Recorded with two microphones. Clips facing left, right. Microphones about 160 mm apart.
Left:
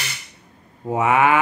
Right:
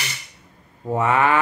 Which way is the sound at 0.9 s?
15° left (ahead or behind).